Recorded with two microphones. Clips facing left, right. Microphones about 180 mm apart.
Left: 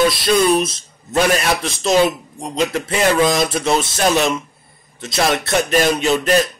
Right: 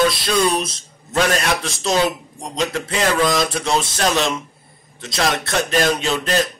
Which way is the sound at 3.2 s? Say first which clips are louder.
Left 1 dB; 20° left (ahead or behind).